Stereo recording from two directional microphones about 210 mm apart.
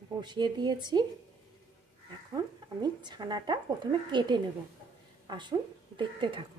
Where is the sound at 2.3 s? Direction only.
20° right (ahead or behind).